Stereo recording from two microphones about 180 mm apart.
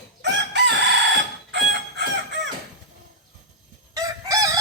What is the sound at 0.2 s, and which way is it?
Chicken, 75° right (ahead or behind).